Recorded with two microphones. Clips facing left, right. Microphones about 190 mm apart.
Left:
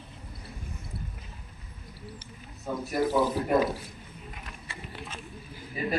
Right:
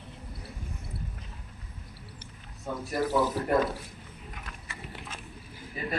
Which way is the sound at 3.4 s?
5° left (ahead or behind).